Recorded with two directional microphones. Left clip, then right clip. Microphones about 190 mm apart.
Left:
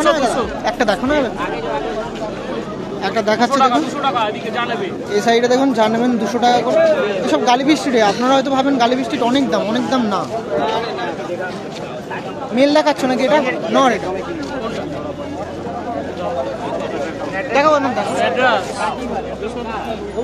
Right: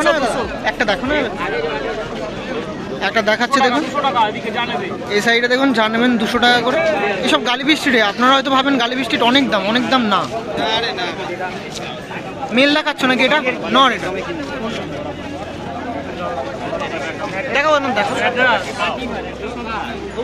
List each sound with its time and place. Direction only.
0.0 s speech: 15° left (ahead or behind)
0.7 s speech: 30° left (ahead or behind)
3.0 s speech: 5° left (ahead or behind)
5.1 s speech: centre (ahead or behind)
12.5 s speech: 5° left (ahead or behind)
17.5 s speech: centre (ahead or behind)
18.2 s a man's voice: 40° left (ahead or behind)